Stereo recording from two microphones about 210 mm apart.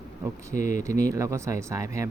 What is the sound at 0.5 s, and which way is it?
Speech, 35° left (ahead or behind).